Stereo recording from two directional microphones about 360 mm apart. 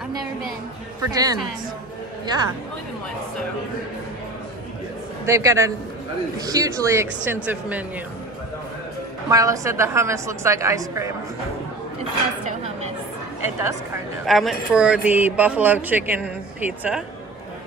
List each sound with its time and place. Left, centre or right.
1.0 s a woman's voice: centre
5.2 s a woman's voice: centre
9.3 s a woman's voice: centre
13.4 s speech: centre